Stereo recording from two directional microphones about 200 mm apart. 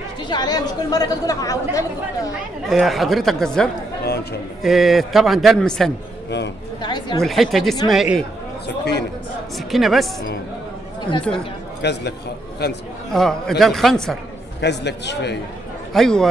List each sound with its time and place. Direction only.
0.3 s speech: 20° left (ahead or behind)
2.7 s a man's voice: centre (ahead or behind)
4.0 s a sound: 55° left (ahead or behind)
4.6 s a man's voice: centre (ahead or behind)
6.8 s a woman's voice: 20° left (ahead or behind)
7.2 s a man's voice: centre (ahead or behind)
8.6 s speech: 55° left (ahead or behind)
9.6 s a man's voice: centre (ahead or behind)
11.8 s a man's voice: 55° left (ahead or behind)
13.1 s a man's voice: centre (ahead or behind)
14.6 s a man's voice: 60° left (ahead or behind)
15.9 s a man's voice: centre (ahead or behind)